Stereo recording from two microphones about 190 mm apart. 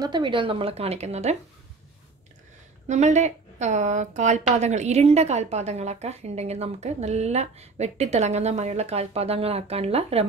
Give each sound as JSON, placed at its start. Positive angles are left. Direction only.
{"t": 0.0, "sound": "speech", "side_deg": -25}
{"t": 2.9, "sound": "a woman's voice", "side_deg": -40}